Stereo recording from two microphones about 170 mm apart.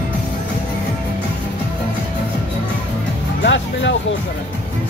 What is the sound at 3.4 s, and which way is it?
Music, 90° left.